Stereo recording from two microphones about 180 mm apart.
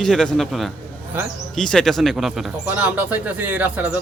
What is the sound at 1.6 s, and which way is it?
Speech, 5° left (ahead or behind).